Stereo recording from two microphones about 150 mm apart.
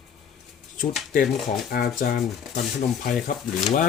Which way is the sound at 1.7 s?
80° left.